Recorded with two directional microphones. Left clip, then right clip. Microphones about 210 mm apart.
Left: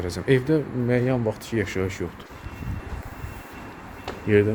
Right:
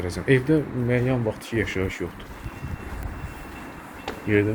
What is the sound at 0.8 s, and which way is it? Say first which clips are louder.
Speech: left 3 dB; 25° left (ahead or behind).